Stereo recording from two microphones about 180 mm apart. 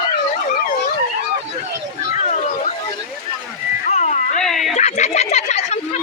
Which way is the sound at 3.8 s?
45° left (ahead or behind).